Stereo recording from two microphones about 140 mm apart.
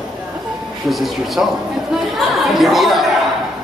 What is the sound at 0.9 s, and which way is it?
Speech, centre (ahead or behind).